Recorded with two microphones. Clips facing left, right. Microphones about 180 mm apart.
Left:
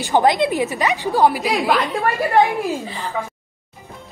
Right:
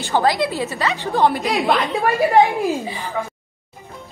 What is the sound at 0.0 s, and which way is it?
A woman's voice, 20° left (ahead or behind).